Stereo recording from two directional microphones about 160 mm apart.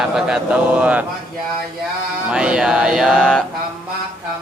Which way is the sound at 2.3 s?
5° right (ahead or behind).